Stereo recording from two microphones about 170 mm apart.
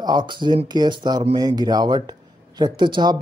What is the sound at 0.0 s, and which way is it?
Speech, 25° right (ahead or behind).